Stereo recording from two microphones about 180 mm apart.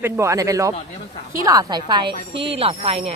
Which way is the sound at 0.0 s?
15° right (ahead or behind).